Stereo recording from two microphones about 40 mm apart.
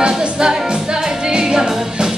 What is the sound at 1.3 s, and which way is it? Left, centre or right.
Music, centre.